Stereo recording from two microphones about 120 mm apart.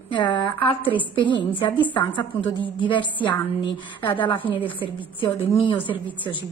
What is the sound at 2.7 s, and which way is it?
Speech, 45° left (ahead or behind).